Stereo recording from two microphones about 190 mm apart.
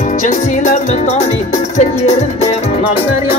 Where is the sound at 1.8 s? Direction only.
35° left (ahead or behind).